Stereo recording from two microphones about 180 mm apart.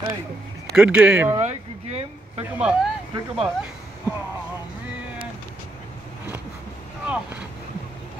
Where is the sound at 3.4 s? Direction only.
10° right (ahead or behind).